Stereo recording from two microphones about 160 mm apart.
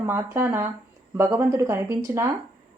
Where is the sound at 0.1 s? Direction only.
15° right (ahead or behind).